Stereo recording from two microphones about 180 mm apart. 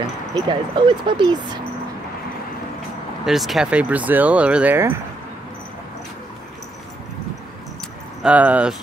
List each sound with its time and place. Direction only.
0.0 s speech: 25° right (ahead or behind)
3.3 s speech: centre (ahead or behind)
8.2 s speech: 5° right (ahead or behind)